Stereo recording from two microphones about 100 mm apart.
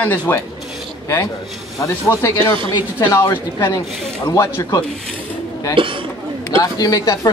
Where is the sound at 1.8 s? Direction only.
30° left (ahead or behind).